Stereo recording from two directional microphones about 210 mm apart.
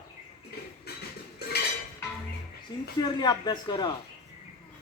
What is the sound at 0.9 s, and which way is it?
Music, 50° left (ahead or behind).